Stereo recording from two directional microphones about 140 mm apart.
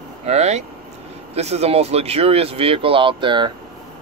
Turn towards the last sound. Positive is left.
turn(degrees=-35)  # may be behind; listen again after turning